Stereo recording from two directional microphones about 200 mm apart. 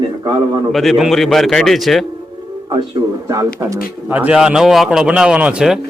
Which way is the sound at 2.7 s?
20° right (ahead or behind).